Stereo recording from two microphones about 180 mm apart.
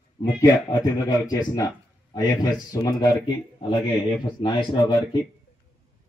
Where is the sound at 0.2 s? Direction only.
25° left (ahead or behind).